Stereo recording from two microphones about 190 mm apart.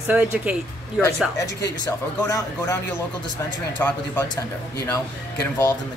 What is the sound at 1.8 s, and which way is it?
Speech, 15° left (ahead or behind).